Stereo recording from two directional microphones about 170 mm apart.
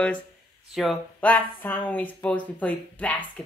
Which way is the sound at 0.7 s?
5° right (ahead or behind).